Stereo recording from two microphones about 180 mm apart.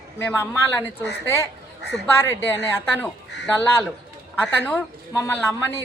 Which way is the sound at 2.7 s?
10° left (ahead or behind).